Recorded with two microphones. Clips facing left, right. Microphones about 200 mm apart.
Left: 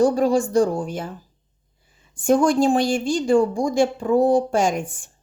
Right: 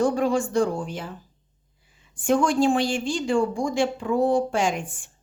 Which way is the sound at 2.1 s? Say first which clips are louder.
Left 4 dB; 40° left (ahead or behind).